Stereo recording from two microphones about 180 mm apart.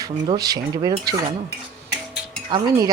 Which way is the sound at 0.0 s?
20° right (ahead or behind).